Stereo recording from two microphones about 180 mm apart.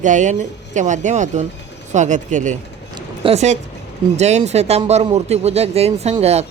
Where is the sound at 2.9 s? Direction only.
30° right (ahead or behind).